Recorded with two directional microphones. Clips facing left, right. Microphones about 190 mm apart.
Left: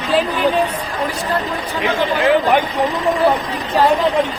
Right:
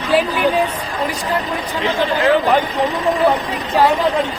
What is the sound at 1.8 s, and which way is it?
Speech, 15° left (ahead or behind).